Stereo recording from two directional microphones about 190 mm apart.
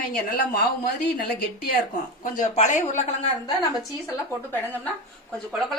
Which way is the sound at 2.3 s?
40° left (ahead or behind).